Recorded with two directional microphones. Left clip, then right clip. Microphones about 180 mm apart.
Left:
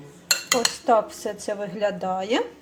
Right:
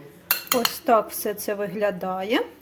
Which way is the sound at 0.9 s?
20° right (ahead or behind).